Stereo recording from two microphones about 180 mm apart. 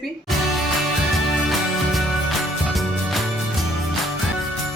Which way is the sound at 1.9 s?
Centre (ahead or behind).